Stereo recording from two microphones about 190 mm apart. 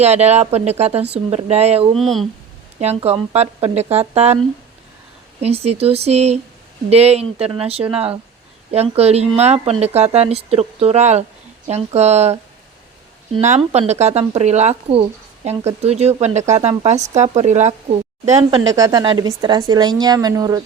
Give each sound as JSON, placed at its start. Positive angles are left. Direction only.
{"t": 0.0, "sound": "speech", "side_deg": -35}
{"t": 2.0, "sound": "speech", "side_deg": 0}
{"t": 2.8, "sound": "speech", "side_deg": -35}
{"t": 5.4, "sound": "speech", "side_deg": -30}
{"t": 13.4, "sound": "speech", "side_deg": -35}
{"t": 18.8, "sound": "speech", "side_deg": -20}